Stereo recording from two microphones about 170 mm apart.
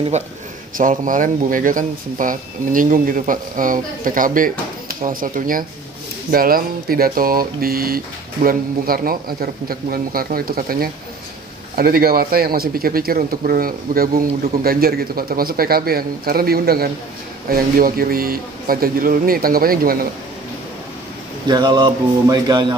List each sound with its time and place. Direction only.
0.7 s a man's voice: 50° right (ahead or behind)
21.5 s speech: 25° right (ahead or behind)